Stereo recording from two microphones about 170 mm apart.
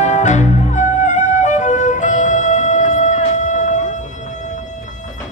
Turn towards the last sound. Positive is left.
turn(degrees=45)  # may be behind; listen again after turning